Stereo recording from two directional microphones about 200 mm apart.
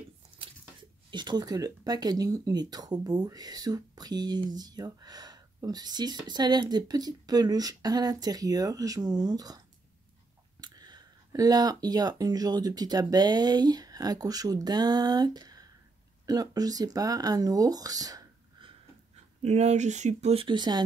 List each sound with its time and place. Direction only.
1.1 s speech: 20° right (ahead or behind)
10.6 s speech: 20° right (ahead or behind)
19.4 s speech: 35° right (ahead or behind)